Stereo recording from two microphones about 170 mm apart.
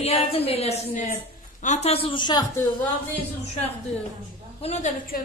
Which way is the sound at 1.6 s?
40° left (ahead or behind).